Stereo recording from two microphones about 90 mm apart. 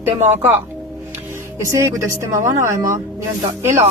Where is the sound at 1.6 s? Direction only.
35° right (ahead or behind).